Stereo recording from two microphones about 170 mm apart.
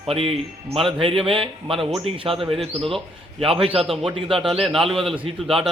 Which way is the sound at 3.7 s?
Centre (ahead or behind).